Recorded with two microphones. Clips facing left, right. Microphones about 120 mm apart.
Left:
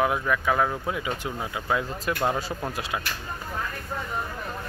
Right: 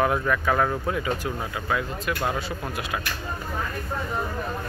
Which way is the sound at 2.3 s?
35° left (ahead or behind).